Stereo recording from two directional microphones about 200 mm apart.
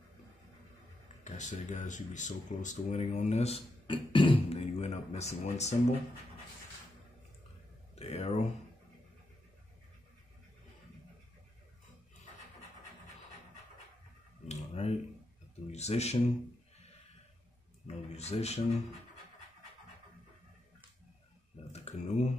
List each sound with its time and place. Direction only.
1.2 s speech: 35° left (ahead or behind)
7.9 s speech: 30° left (ahead or behind)
14.5 s a sound: 30° left (ahead or behind)
15.7 s speech: 35° left (ahead or behind)
17.8 s speech: 35° left (ahead or behind)
21.7 s speech: 35° left (ahead or behind)